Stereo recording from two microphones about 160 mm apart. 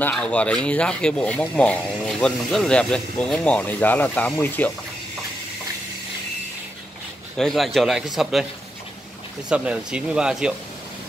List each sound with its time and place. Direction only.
0.1 s speech: 10° left (ahead or behind)
7.3 s a man's voice: centre (ahead or behind)
9.5 s a man's voice: 5° right (ahead or behind)